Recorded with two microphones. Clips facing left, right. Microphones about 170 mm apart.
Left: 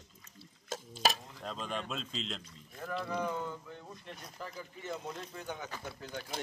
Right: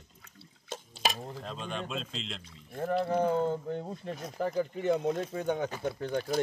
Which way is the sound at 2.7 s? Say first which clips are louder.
Right 8 dB; 50° right (ahead or behind).